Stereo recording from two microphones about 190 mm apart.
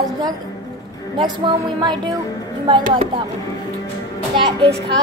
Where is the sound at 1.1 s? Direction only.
25° right (ahead or behind).